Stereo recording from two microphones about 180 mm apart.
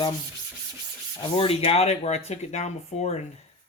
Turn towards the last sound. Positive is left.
turn(degrees=40)  # may be behind; listen again after turning